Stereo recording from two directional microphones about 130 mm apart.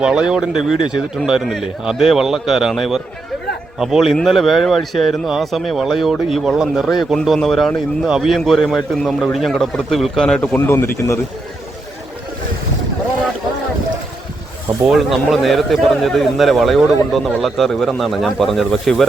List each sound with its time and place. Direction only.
0.0 s speech: 5° right (ahead or behind)
10.7 s speech: 20° left (ahead or behind)
14.8 s speech: centre (ahead or behind)